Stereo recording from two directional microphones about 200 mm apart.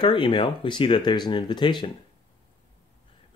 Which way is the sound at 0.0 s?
25° left (ahead or behind).